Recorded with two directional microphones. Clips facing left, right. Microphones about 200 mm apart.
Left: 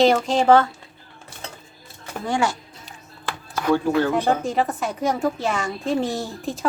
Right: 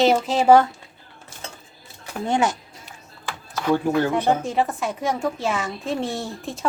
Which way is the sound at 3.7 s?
15° right (ahead or behind).